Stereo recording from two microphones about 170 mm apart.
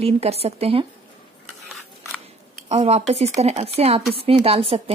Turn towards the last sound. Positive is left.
turn(degrees=-35)  # may be behind; listen again after turning